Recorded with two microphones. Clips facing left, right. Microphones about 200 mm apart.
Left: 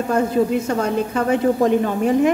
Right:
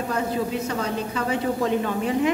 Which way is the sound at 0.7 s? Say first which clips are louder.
Left 6 dB; 50° left (ahead or behind).